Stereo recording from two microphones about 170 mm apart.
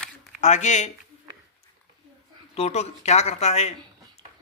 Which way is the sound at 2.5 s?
40° left (ahead or behind).